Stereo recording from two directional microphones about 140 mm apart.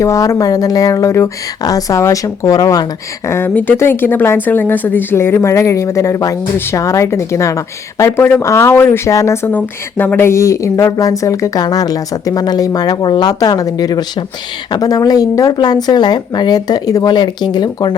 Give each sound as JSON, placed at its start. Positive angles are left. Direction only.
{"t": 0.0, "sound": "speech", "side_deg": 20}
{"t": 3.2, "sound": "speech", "side_deg": 15}